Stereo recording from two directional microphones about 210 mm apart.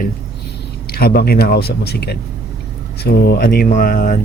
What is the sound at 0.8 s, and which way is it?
Speech, 45° left (ahead or behind).